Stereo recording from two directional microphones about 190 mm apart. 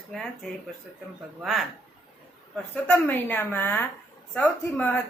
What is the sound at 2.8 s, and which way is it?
A woman's voice, 10° left (ahead or behind).